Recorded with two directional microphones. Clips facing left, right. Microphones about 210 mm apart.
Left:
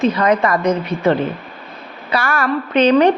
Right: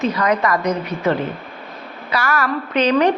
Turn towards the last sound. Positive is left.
turn(degrees=30)  # may be behind; listen again after turning